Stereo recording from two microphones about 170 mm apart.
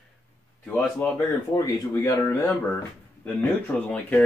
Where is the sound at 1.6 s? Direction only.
20° left (ahead or behind).